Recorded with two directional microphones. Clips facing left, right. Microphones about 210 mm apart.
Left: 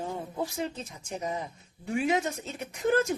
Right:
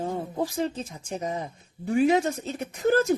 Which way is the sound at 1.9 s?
35° right (ahead or behind).